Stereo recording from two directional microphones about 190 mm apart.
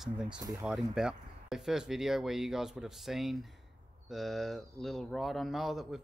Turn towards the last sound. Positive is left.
turn(degrees=0)  # may be behind; listen again after turning